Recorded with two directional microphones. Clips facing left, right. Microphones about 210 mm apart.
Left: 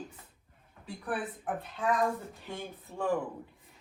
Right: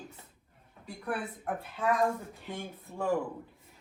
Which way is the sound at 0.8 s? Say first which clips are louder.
Even; centre (ahead or behind).